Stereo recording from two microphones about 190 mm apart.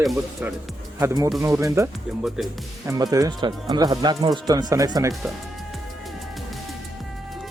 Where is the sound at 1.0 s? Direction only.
15° right (ahead or behind).